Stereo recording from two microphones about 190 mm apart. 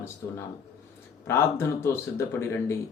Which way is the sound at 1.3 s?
15° left (ahead or behind).